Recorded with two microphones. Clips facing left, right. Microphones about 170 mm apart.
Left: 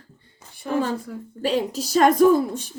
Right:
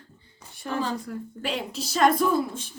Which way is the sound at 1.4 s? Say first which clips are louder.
Left 9 dB; 40° left (ahead or behind).